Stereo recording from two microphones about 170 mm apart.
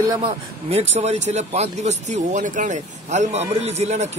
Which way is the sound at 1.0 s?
40° right (ahead or behind).